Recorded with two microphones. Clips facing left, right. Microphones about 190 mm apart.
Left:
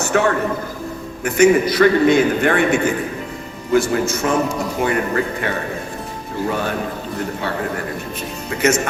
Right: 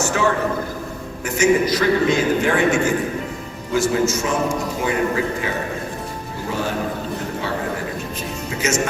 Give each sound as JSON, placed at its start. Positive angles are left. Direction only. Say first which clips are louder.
{"t": 0.0, "sound": "a sound", "louder": "left 3 dB", "side_deg": 60}
{"t": 1.2, "sound": "a man's voice", "louder": "left 4 dB", "side_deg": 60}
{"t": 8.4, "sound": "speech", "louder": "left 5 dB", "side_deg": 60}